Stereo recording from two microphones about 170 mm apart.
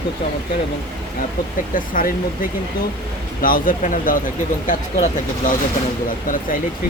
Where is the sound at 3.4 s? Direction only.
55° left (ahead or behind).